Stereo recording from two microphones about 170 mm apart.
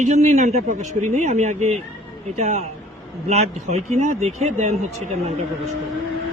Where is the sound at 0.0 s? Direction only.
40° right (ahead or behind).